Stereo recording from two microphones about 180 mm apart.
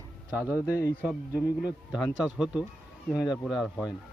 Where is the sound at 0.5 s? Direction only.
15° left (ahead or behind).